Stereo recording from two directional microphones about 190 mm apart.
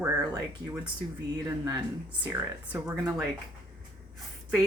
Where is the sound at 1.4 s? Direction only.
20° right (ahead or behind).